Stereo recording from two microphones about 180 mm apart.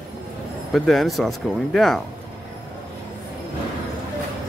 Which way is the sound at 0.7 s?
Centre (ahead or behind).